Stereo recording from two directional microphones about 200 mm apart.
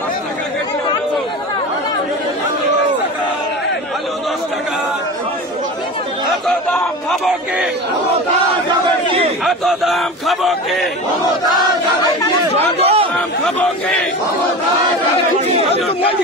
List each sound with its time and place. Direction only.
6.4 s a sound: centre (ahead or behind)
9.4 s speech: centre (ahead or behind)
12.0 s chatter: 20° left (ahead or behind)
12.8 s chatter: 30° right (ahead or behind)
13.6 s speech: 5° left (ahead or behind)